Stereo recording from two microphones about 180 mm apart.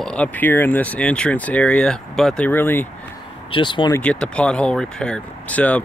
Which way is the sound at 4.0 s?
5° left (ahead or behind).